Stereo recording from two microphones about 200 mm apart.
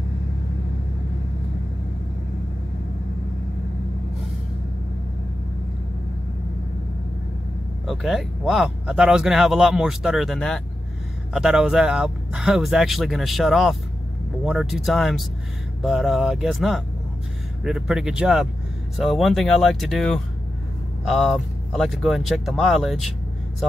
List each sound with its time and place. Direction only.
7.8 s speech: centre (ahead or behind)